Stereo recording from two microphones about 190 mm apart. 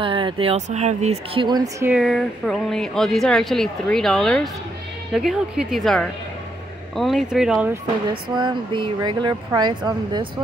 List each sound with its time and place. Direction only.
0.0 s speech: 25° right (ahead or behind)
1.9 s speech: centre (ahead or behind)
8.1 s speech: 25° right (ahead or behind)